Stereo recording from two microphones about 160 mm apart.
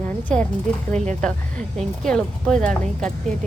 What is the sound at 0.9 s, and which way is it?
Speech, 45° right (ahead or behind).